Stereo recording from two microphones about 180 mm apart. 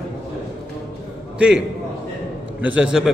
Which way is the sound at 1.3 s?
5° right (ahead or behind).